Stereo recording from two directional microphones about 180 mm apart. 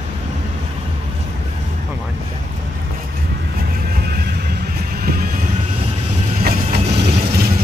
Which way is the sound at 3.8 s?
60° right (ahead or behind).